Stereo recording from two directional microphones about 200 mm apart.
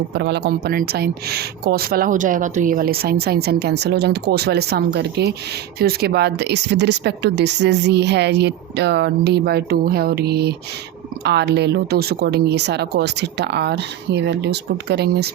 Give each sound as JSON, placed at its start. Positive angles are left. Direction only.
{"t": 0.1, "sound": "speech", "side_deg": -60}